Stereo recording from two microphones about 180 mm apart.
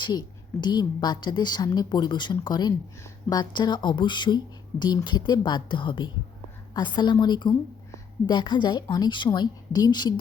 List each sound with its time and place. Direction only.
0.0 s a woman's voice: 25° left (ahead or behind)